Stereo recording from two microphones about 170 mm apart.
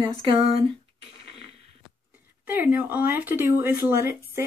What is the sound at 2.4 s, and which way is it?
Speech, 10° right (ahead or behind).